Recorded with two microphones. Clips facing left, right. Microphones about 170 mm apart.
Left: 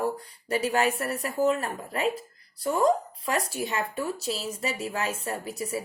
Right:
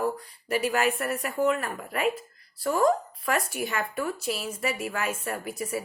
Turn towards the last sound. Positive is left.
turn(degrees=30)  # may be behind; listen again after turning